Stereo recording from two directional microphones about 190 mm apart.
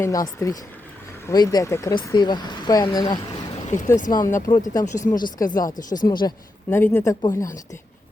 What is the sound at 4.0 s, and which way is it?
Speech, 45° left (ahead or behind).